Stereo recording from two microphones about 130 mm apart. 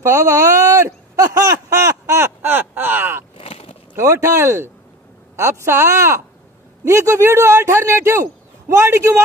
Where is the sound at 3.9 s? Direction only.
20° right (ahead or behind).